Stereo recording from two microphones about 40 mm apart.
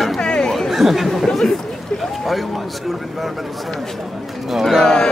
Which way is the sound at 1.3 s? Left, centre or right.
Left.